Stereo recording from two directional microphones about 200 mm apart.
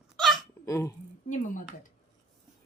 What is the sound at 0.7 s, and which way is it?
Speech, 15° left (ahead or behind).